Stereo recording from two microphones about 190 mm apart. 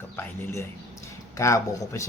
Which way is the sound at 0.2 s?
15° left (ahead or behind).